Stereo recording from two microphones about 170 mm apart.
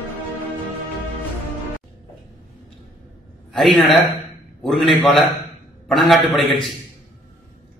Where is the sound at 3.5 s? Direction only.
Centre (ahead or behind).